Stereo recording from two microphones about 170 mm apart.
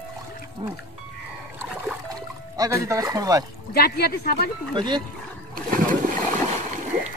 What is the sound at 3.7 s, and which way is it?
Speech, 65° left (ahead or behind).